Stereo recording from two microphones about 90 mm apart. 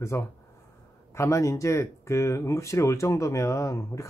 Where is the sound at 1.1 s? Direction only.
30° left (ahead or behind).